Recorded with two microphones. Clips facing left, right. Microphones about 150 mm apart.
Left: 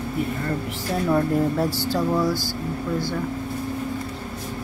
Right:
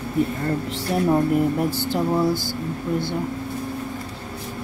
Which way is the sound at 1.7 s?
20° right (ahead or behind).